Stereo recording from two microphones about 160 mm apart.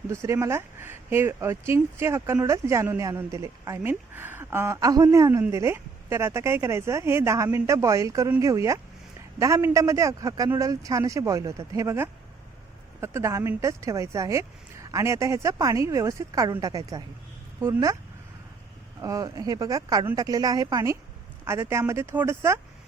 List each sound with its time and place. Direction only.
0.1 s speech: 15° right (ahead or behind)
19.0 s speech: 20° right (ahead or behind)